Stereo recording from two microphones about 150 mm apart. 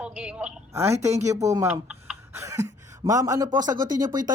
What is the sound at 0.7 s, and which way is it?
A woman's voice, 15° right (ahead or behind).